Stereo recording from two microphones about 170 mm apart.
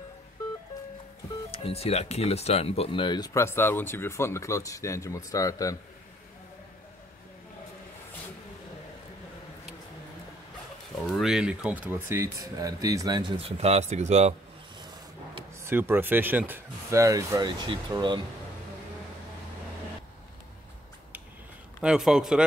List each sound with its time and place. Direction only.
1.5 s speech: 35° left (ahead or behind); by 5.8 s 20° left (ahead or behind)
11.1 s speech: centre (ahead or behind); by 14.3 s 40° right (ahead or behind)
15.6 s speech: 15° right (ahead or behind)
21.8 s a man's voice: 5° right (ahead or behind)